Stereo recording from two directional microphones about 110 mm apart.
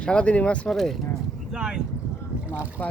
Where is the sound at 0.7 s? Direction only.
Centre (ahead or behind).